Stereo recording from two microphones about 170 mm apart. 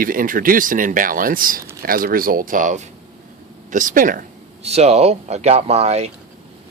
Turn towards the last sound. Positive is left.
turn(degrees=-40)  # may be behind; listen again after turning